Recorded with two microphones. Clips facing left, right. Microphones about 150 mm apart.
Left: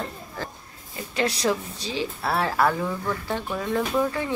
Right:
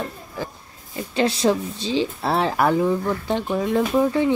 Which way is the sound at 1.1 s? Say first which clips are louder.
Right 5 dB; 25° right (ahead or behind).